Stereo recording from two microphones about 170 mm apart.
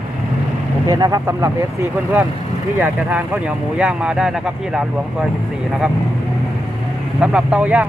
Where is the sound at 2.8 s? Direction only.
10° right (ahead or behind).